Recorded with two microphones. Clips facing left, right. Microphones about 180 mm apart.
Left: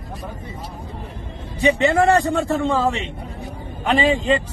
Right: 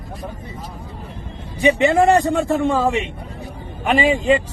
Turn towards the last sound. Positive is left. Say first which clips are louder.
# right 2 dB
turn(degrees=-10)  # may be behind; listen again after turning